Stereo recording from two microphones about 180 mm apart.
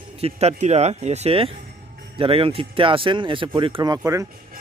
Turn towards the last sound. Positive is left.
turn(degrees=-20)  # may be behind; listen again after turning